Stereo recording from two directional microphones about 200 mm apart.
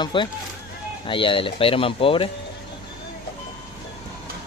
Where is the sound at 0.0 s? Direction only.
25° left (ahead or behind).